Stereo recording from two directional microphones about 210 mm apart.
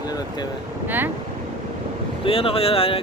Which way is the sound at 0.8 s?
10° right (ahead or behind).